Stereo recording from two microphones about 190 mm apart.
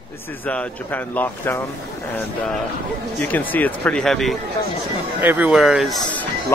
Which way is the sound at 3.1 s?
10° left (ahead or behind).